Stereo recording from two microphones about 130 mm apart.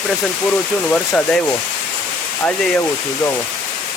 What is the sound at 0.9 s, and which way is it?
Speech, 10° left (ahead or behind).